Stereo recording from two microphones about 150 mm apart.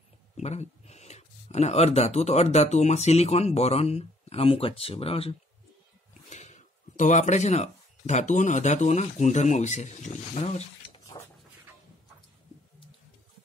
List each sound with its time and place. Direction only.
0.4 s speech: 45° left (ahead or behind)
6.3 s speech: 50° left (ahead or behind)